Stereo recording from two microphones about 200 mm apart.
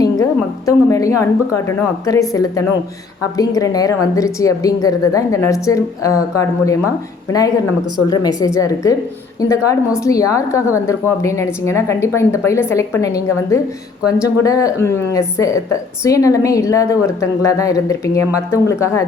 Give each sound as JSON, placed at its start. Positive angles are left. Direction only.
{"t": 0.0, "sound": "a woman's voice", "side_deg": 15}